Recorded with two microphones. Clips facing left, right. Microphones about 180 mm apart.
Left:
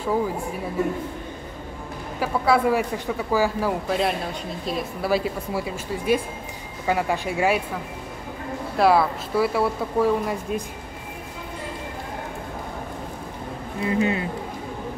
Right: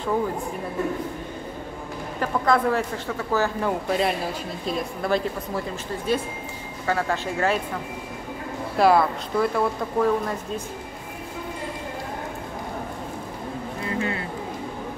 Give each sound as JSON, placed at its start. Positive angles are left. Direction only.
{"t": 0.0, "sound": "speech", "side_deg": 10}
{"t": 2.1, "sound": "speech", "side_deg": 5}
{"t": 8.7, "sound": "speech", "side_deg": 0}
{"t": 13.8, "sound": "speech", "side_deg": 20}